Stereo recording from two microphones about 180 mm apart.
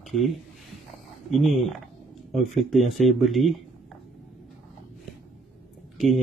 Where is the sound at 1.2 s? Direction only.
Centre (ahead or behind).